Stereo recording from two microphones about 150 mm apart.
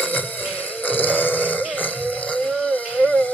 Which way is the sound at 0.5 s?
10° left (ahead or behind).